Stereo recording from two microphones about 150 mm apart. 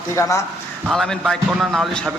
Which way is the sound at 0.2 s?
20° left (ahead or behind).